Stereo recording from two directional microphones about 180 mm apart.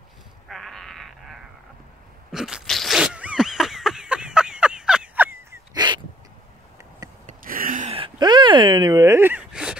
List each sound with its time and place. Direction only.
0.5 s sheep: centre (ahead or behind)
2.3 s crunch: centre (ahead or behind); by 5.9 s 20° right (ahead or behind)
7.2 s a sound: 50° right (ahead or behind)
7.9 s gasp: 25° right (ahead or behind); by 9.8 s 5° right (ahead or behind)